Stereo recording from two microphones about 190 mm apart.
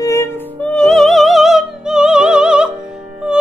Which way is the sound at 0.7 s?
Centre (ahead or behind).